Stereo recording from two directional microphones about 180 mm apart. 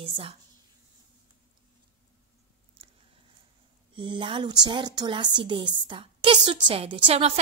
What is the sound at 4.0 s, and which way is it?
A woman's voice, 25° right (ahead or behind).